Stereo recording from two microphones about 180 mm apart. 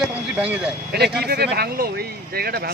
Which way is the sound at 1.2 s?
60° right (ahead or behind).